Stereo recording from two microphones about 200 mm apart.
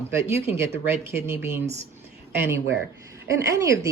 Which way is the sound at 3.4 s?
15° right (ahead or behind).